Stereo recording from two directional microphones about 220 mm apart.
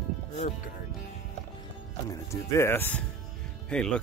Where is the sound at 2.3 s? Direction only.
10° left (ahead or behind).